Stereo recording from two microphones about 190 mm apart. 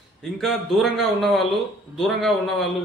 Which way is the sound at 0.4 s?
Centre (ahead or behind).